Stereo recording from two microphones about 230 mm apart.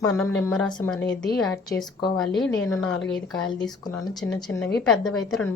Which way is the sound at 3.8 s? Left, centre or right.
Centre.